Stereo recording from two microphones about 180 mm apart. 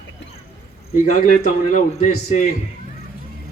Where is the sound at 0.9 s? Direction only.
45° left (ahead or behind).